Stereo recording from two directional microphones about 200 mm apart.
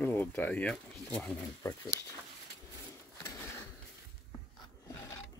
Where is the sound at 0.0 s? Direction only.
10° left (ahead or behind).